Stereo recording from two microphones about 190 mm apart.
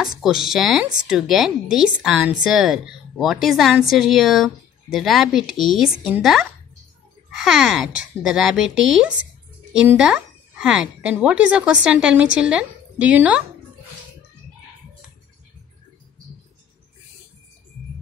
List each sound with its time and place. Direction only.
0.0 s a woman's voice: centre (ahead or behind)